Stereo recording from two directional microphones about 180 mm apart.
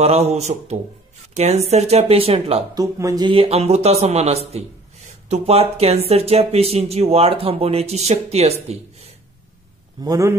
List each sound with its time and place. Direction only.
0.0 s a man's voice: 35° right (ahead or behind)
2.7 s a man's voice: 20° right (ahead or behind); by 9.1 s 35° right (ahead or behind)
10.0 s a man's voice: 15° right (ahead or behind)